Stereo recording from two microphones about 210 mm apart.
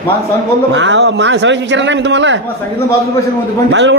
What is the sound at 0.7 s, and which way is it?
A man's voice, 60° right (ahead or behind).